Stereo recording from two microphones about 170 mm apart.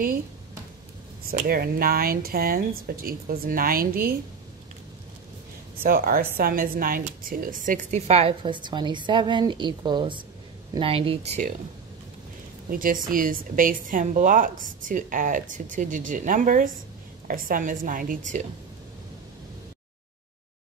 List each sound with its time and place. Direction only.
1.4 s speech: 65° right (ahead or behind)
5.8 s speech: 60° right (ahead or behind); by 11.4 s 35° right (ahead or behind)
12.7 s a woman's voice: 55° right (ahead or behind)